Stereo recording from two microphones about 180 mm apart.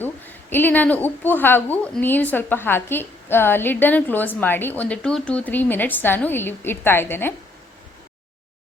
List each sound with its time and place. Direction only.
0.0 s a woman's voice: 10° left (ahead or behind)